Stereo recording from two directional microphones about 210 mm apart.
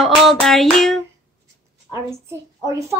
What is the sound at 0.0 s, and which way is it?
Hands, centre (ahead or behind).